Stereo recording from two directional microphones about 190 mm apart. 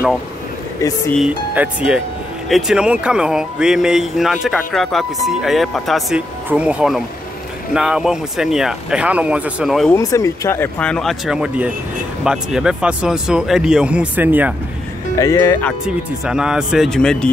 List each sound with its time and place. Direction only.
0.7 s speech: 15° left (ahead or behind)
1.2 s speech: 5° right (ahead or behind)
9.9 s speech: 15° left (ahead or behind); by 14.5 s 10° right (ahead or behind)
15.1 s speech: 15° left (ahead or behind)
16.3 s speech: 5° right (ahead or behind)